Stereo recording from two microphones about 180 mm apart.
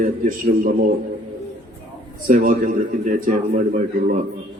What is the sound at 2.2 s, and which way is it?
A man's voice, 50° right (ahead or behind).